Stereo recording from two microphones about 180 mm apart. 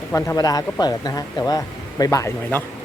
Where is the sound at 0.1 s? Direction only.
15° left (ahead or behind).